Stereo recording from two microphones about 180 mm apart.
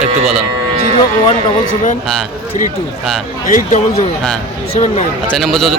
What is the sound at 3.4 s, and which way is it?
Speech, 40° left (ahead or behind).